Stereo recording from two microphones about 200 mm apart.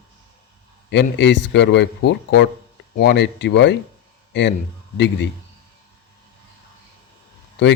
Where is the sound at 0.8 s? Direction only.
60° left (ahead or behind).